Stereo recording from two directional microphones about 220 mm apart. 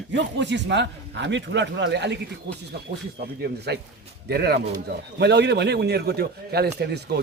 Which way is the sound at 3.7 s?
50° right (ahead or behind).